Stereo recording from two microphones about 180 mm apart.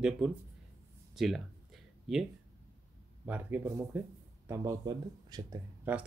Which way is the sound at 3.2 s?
10° right (ahead or behind).